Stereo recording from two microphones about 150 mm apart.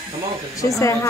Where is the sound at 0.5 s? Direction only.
20° left (ahead or behind).